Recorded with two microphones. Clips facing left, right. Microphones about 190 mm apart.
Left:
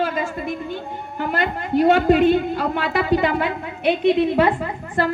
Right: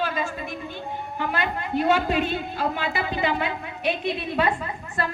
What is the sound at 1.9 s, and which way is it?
A woman's voice, 55° left (ahead or behind).